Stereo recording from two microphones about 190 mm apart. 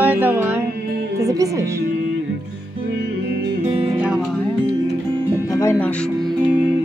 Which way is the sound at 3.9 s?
5° right (ahead or behind).